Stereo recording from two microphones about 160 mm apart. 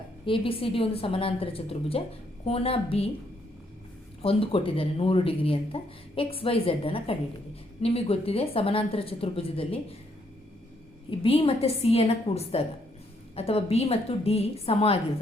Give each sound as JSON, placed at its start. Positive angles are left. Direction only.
{"t": 0.3, "sound": "speech", "side_deg": 35}
{"t": 4.2, "sound": "speech", "side_deg": 35}
{"t": 11.1, "sound": "speech", "side_deg": 35}